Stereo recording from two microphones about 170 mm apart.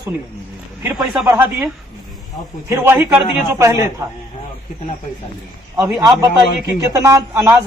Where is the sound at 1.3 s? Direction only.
10° right (ahead or behind).